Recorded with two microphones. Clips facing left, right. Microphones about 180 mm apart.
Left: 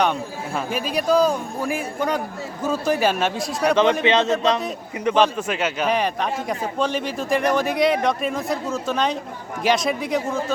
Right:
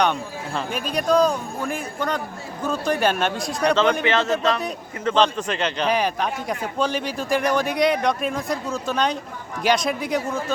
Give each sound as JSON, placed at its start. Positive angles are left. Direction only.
{"t": 0.0, "sound": "a man's voice", "side_deg": 5}
{"t": 4.0, "sound": "a man's voice", "side_deg": 20}